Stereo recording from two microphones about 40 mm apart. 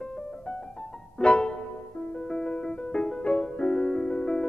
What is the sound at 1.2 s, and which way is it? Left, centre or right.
Music, left.